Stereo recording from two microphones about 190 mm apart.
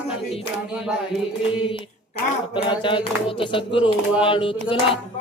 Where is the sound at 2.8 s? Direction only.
25° left (ahead or behind).